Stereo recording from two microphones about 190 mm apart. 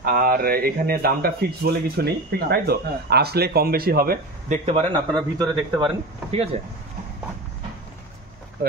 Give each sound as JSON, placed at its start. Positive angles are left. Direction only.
{"t": 0.0, "sound": "speech", "side_deg": -50}
{"t": 4.9, "sound": "speech", "side_deg": -20}